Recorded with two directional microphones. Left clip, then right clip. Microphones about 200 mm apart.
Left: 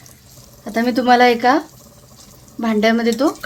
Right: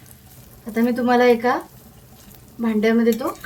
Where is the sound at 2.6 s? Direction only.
55° left (ahead or behind).